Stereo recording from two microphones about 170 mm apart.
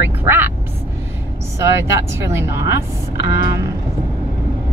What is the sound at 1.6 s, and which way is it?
Speech, 15° right (ahead or behind).